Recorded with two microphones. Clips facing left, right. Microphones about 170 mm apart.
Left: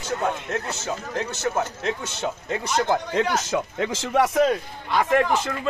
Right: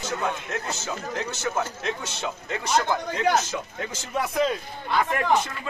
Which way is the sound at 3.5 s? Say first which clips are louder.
Left 7 dB; 90° left.